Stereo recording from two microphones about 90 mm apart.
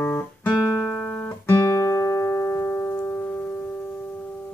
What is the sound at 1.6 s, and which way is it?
Music, 40° left (ahead or behind).